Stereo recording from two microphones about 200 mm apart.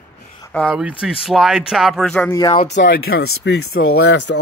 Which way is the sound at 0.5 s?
Centre (ahead or behind).